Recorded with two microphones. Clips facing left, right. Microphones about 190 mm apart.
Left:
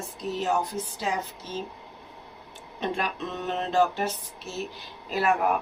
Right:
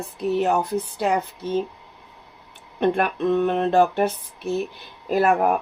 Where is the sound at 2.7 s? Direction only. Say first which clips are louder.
Right 9 dB; 60° right (ahead or behind).